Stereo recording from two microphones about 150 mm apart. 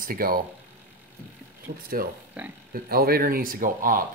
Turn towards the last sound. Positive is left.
turn(degrees=-65)  # may be behind; listen again after turning